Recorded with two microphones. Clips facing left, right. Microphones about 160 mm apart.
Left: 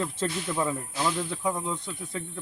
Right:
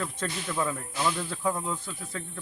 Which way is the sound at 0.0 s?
20° left (ahead or behind).